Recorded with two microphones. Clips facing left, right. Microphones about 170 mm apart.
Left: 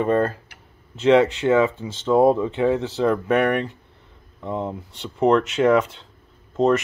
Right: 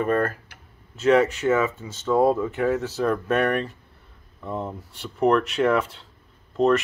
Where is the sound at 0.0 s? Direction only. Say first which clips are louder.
Left 3 dB; 25° left (ahead or behind).